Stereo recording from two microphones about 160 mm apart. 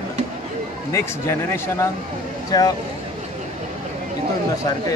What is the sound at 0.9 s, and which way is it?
Speech, 15° left (ahead or behind).